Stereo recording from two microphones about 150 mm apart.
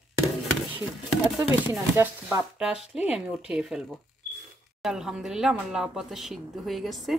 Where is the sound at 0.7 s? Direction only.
5° right (ahead or behind).